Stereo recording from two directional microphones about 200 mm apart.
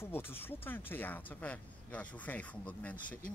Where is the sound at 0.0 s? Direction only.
10° left (ahead or behind).